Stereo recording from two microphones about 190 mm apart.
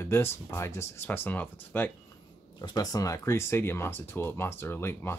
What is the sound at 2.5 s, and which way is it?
Speech, 20° left (ahead or behind).